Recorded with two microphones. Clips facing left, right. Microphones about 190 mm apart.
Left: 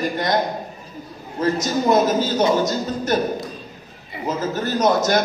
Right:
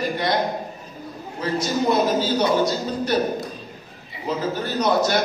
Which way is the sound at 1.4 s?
45° left (ahead or behind).